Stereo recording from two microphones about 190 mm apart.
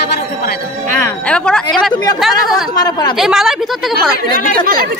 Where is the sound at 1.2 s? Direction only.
5° left (ahead or behind).